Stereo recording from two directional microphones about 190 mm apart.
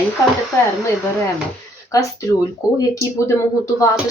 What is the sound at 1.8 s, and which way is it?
Speech, 15° left (ahead or behind).